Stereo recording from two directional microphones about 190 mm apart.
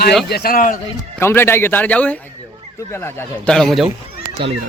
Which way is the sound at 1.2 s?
10° left (ahead or behind).